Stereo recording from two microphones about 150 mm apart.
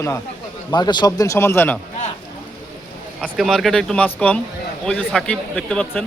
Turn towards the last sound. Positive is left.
turn(degrees=5)  # may be behind; listen again after turning